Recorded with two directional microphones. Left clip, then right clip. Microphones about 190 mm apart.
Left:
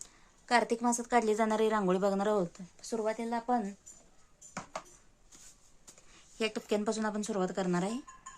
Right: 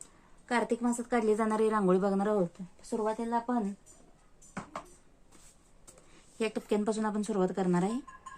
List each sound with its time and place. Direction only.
0.4 s a woman's voice: 25° left (ahead or behind)
6.4 s speech: 20° left (ahead or behind)